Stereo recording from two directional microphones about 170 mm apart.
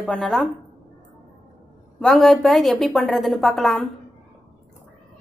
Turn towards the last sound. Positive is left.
turn(degrees=0)  # may be behind; listen again after turning